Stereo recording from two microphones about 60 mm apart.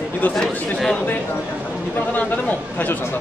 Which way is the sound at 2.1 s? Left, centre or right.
Left.